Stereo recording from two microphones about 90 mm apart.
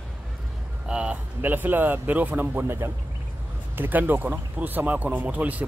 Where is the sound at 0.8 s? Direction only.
10° right (ahead or behind).